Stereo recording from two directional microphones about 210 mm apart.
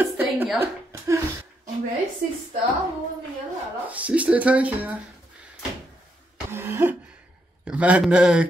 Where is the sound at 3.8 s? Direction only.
5° right (ahead or behind).